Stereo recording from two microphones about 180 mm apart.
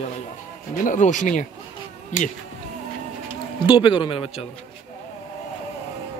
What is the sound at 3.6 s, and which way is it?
Speech, 30° left (ahead or behind).